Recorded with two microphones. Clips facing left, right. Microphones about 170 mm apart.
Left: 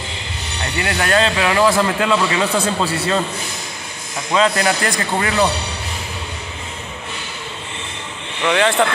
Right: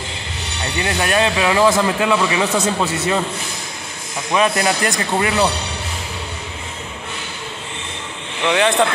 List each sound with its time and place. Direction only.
0.7 s speech: 20° right (ahead or behind)
4.3 s speech: 20° right (ahead or behind)
8.5 s speech: 20° right (ahead or behind)